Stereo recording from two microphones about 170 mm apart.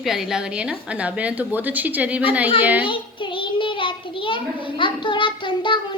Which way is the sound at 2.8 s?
30° left (ahead or behind).